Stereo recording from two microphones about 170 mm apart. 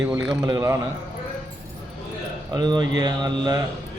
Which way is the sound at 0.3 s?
25° right (ahead or behind).